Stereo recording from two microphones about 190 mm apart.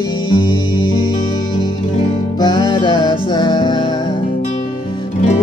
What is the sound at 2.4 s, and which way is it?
Music, 20° left (ahead or behind).